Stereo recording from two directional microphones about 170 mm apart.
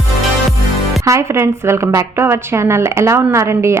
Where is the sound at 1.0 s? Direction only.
15° right (ahead or behind).